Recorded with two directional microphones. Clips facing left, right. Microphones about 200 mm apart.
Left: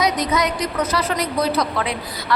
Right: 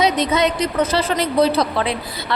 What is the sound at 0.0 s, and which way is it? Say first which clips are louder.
A woman's voice: right 3 dB; 25° right (ahead or behind).